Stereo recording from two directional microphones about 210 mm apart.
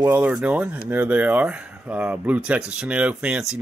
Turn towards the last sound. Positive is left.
turn(degrees=-5)  # may be behind; listen again after turning